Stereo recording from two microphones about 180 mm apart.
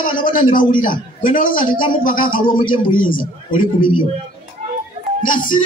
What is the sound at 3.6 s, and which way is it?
Speech, 25° left (ahead or behind).